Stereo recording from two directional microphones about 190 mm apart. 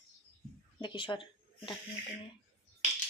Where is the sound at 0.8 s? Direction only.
25° left (ahead or behind).